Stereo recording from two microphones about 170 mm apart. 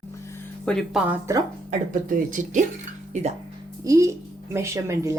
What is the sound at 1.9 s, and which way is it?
Speech, 50° right (ahead or behind).